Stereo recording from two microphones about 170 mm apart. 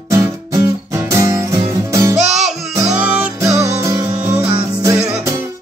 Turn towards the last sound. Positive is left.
turn(degrees=-10)  # may be behind; listen again after turning